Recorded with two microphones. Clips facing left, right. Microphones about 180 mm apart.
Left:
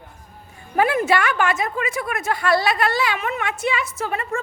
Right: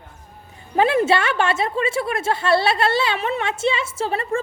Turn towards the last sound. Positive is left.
turn(degrees=-30)  # may be behind; listen again after turning